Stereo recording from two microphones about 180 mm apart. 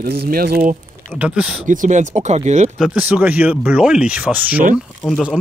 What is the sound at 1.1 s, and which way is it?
Speech, 5° right (ahead or behind).